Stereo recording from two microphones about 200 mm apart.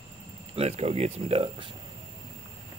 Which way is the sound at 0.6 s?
30° right (ahead or behind).